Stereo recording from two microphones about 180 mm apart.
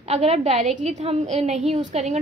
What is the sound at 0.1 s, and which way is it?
A woman's voice, 35° right (ahead or behind).